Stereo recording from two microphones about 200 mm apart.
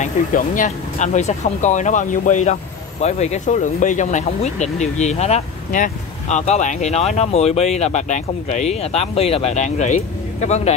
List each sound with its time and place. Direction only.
0.0 s speech: 40° left (ahead or behind)